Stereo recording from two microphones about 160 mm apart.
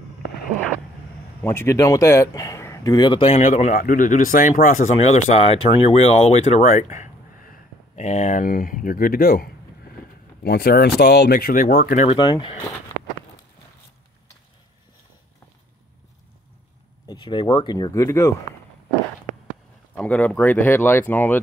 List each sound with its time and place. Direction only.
1.4 s speech: 15° left (ahead or behind); by 9.5 s 70° left (ahead or behind)
10.4 s speech: 85° left; by 12.0 s 65° left (ahead or behind)
12.2 s speech: 30° left (ahead or behind)
17.1 s speech: 30° left (ahead or behind)
20.0 s speech: 10° left (ahead or behind)